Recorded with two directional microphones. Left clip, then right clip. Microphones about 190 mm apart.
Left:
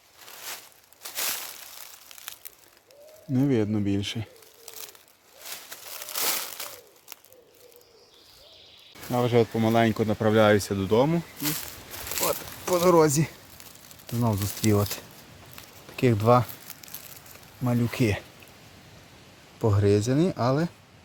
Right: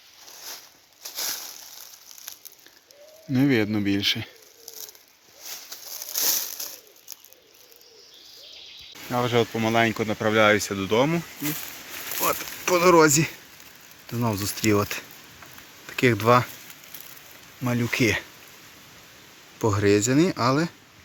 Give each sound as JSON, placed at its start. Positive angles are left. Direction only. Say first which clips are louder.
{"t": 1.1, "sound": "a sound", "louder": "even", "side_deg": 15}
{"t": 3.3, "sound": "speech", "louder": "right 3 dB", "side_deg": -10}
{"t": 4.6, "sound": "bird", "louder": "right 2 dB", "side_deg": 35}
{"t": 6.0, "sound": "crumpling", "louder": "right 3 dB", "side_deg": 15}
{"t": 9.1, "sound": "speech", "louder": "even", "side_deg": 10}
{"t": 12.6, "sound": "speech", "louder": "right 3 dB", "side_deg": 0}
{"t": 17.6, "sound": "speech", "louder": "right 3 dB", "side_deg": 0}
{"t": 19.7, "sound": "speech", "louder": "right 4 dB", "side_deg": 0}